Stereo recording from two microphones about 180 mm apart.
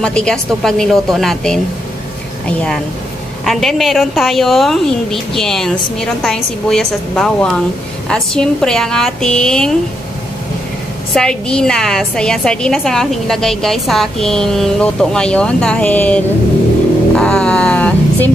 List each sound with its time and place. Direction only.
0.0 s a woman's voice: 5° left (ahead or behind)
11.1 s a woman's voice: 5° left (ahead or behind)
17.2 s a sound: 5° left (ahead or behind)